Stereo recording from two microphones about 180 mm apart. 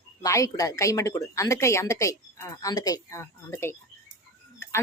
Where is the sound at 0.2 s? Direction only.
20° left (ahead or behind).